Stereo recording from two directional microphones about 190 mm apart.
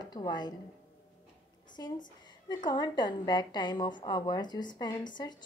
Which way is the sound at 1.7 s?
25° left (ahead or behind).